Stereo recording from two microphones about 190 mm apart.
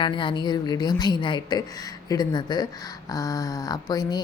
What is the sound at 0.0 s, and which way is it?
Speech, 25° left (ahead or behind).